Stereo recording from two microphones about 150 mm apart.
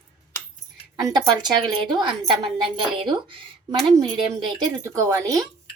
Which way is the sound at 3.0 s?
35° right (ahead or behind).